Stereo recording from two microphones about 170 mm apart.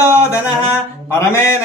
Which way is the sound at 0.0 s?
15° left (ahead or behind).